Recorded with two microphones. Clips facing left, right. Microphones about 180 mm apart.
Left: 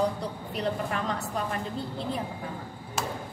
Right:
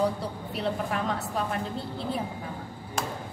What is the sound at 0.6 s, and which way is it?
Speech, centre (ahead or behind).